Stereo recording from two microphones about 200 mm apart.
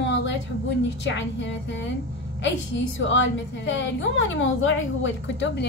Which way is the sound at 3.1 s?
65° left (ahead or behind).